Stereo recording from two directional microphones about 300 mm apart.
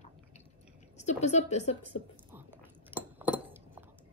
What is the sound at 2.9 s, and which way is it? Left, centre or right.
Glass, centre.